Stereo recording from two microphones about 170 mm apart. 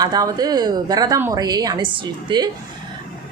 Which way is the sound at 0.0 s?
20° right (ahead or behind).